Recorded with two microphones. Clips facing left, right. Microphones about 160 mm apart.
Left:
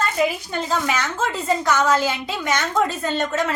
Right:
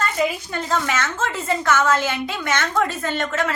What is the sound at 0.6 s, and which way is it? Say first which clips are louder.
A woman's voice: right 1 dB; 15° left (ahead or behind).